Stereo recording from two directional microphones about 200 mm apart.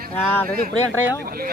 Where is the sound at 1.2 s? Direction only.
50° right (ahead or behind).